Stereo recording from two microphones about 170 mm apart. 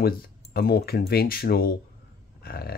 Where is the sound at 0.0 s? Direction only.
60° left (ahead or behind).